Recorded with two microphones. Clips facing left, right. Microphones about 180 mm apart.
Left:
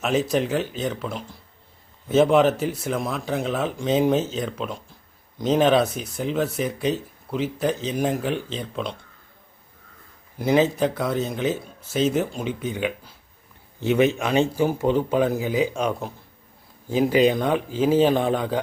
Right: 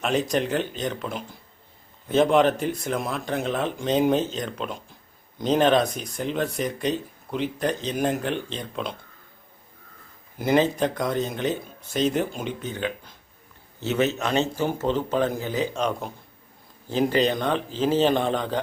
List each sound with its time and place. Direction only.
0.0 s speech: 5° left (ahead or behind)
10.3 s speech: centre (ahead or behind)